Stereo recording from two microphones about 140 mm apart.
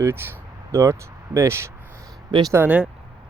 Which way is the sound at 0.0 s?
15° right (ahead or behind).